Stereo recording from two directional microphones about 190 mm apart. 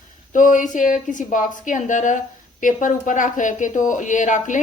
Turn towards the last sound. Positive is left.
turn(degrees=40)  # may be behind; listen again after turning